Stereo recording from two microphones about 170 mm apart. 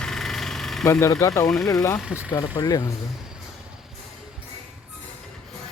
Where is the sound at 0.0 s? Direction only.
Centre (ahead or behind).